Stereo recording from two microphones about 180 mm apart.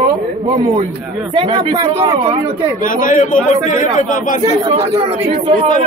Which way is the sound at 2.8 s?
45° left (ahead or behind).